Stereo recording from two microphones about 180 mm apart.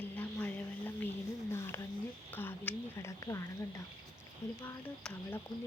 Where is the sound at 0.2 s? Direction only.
10° left (ahead or behind).